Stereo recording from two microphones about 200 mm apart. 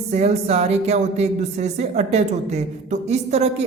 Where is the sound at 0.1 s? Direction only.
35° right (ahead or behind).